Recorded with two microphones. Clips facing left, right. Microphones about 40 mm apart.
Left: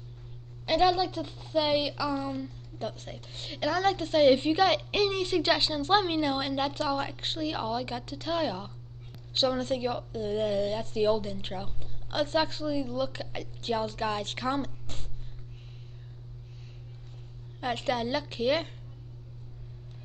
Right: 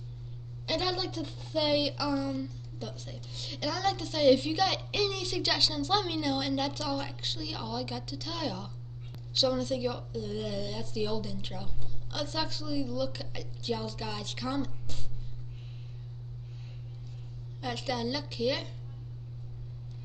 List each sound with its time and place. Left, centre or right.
0.7 s speech: left
17.6 s speech: left